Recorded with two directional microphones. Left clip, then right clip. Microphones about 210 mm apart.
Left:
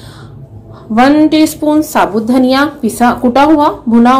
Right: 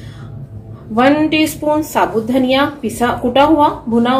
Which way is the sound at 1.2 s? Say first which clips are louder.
Left 4 dB; 35° left (ahead or behind).